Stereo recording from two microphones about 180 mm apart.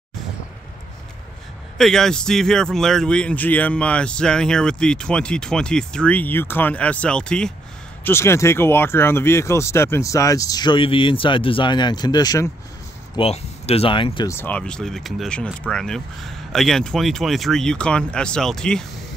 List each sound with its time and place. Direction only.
1.8 s a man's voice: 5° left (ahead or behind); by 12.4 s 20° left (ahead or behind)
13.1 s speech: 35° left (ahead or behind)
14.3 s a man's voice: 10° left (ahead or behind)